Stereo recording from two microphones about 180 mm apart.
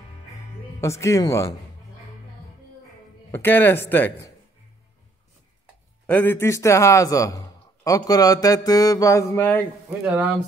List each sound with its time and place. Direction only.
0.7 s a man's voice: 15° left (ahead or behind)
3.3 s a man's voice: 10° left (ahead or behind)
6.0 s a man's voice: 10° left (ahead or behind)
10.0 s speech: 10° right (ahead or behind)